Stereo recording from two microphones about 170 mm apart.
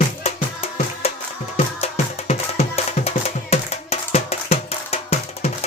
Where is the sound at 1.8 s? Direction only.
40° left (ahead or behind).